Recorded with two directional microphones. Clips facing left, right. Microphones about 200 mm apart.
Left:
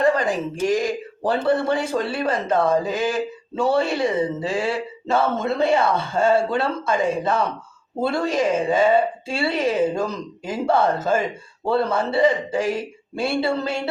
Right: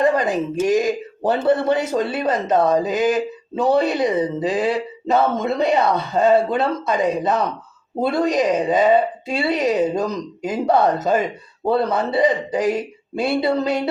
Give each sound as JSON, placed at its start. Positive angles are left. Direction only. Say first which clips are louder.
{"t": 0.0, "sound": "speech", "louder": "right 2 dB", "side_deg": -20}